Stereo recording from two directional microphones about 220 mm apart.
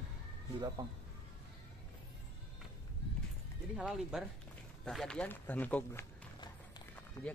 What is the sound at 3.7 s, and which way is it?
Speech, centre (ahead or behind).